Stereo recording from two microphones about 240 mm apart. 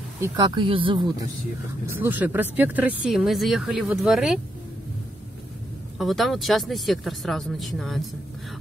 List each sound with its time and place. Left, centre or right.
0.2 s speech: centre
1.9 s speech: centre
5.9 s speech: centre